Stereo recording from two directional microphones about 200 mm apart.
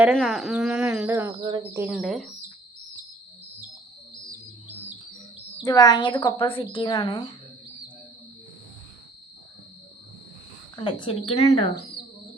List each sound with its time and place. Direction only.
0.0 s speech: centre (ahead or behind); by 1.8 s 20° right (ahead or behind)
1.8 s speech: centre (ahead or behind)
5.6 s speech: 20° left (ahead or behind)
10.8 s speech: 25° left (ahead or behind)